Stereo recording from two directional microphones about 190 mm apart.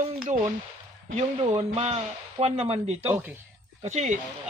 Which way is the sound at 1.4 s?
30° right (ahead or behind).